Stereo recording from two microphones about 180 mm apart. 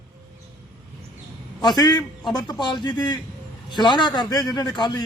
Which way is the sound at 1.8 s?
25° left (ahead or behind).